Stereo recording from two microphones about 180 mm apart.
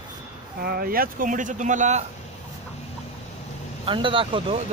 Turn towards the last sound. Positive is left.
turn(degrees=-30)  # may be behind; listen again after turning